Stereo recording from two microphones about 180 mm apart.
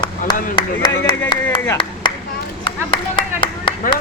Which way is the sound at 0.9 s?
10° left (ahead or behind).